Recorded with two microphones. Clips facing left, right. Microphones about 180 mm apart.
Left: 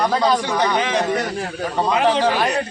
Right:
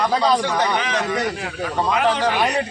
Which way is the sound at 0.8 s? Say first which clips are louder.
Left 2 dB; 30° left (ahead or behind).